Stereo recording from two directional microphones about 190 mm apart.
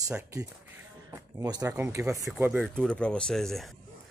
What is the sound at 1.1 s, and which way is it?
Speech, 15° right (ahead or behind).